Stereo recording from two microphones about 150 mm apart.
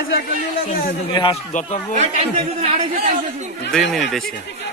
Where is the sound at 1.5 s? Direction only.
55° left (ahead or behind).